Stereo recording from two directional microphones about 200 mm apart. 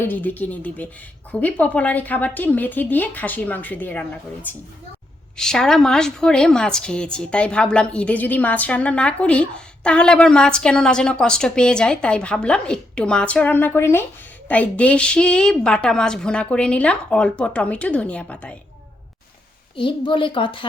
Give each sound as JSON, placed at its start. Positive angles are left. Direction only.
{"t": 0.1, "sound": "a woman's voice", "side_deg": 10}
{"t": 19.7, "sound": "a woman's voice", "side_deg": 25}